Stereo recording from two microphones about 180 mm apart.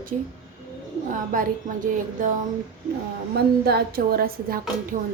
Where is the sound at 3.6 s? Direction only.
60° right (ahead or behind).